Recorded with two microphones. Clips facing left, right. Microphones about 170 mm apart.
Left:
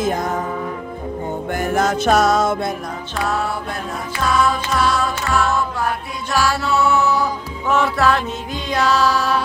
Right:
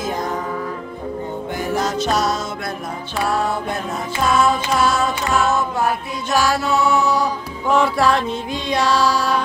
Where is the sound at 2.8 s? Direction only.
10° right (ahead or behind).